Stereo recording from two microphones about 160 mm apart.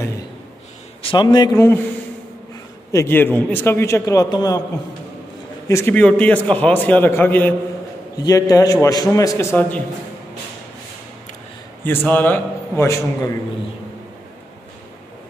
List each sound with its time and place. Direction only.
1.0 s a man's voice: 25° left (ahead or behind)
2.9 s a man's voice: 15° left (ahead or behind)
5.7 s a man's voice: 15° left (ahead or behind)
11.8 s a man's voice: 15° left (ahead or behind)